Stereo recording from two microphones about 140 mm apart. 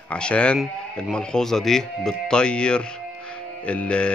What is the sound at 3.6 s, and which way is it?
Music, 10° left (ahead or behind).